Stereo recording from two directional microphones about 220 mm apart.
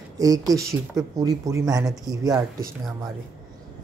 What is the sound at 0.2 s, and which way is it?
Speech, 15° right (ahead or behind).